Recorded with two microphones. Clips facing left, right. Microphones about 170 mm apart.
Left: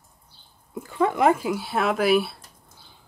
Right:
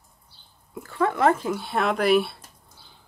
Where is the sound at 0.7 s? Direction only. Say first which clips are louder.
Left 1 dB; 20° left (ahead or behind); by 2.4 s centre (ahead or behind).